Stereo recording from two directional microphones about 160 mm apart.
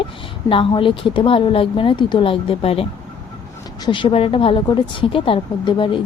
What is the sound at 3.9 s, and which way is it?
Speech, 30° left (ahead or behind).